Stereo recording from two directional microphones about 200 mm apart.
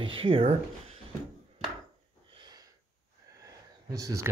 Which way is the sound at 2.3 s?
20° right (ahead or behind).